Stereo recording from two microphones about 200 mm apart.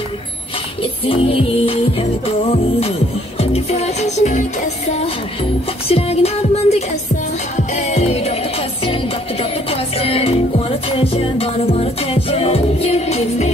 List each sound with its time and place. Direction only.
1.0 s music: 30° left (ahead or behind)